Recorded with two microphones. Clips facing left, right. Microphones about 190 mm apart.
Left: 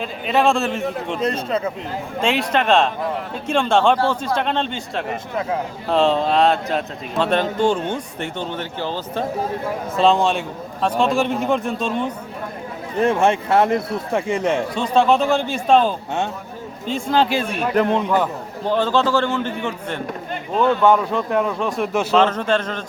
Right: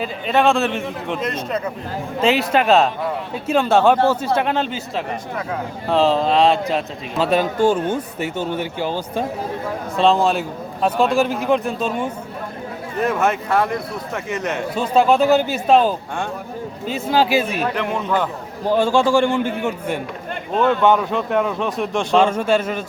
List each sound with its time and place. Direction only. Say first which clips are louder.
0.0 s a man's voice: right 1 dB; centre (ahead or behind)
1.2 s speech: left 4 dB; 30° left (ahead or behind)
2.2 s a man's voice: right 3 dB; 5° right (ahead or behind)
10.0 s a man's voice: right 1 dB; centre (ahead or behind)
13.0 s speech: left 2 dB; 30° left (ahead or behind)
14.8 s a man's voice: right 3 dB; 5° right (ahead or behind)
20.6 s a man's voice: even; centre (ahead or behind)
22.1 s a man's voice: right 2 dB; 10° right (ahead or behind)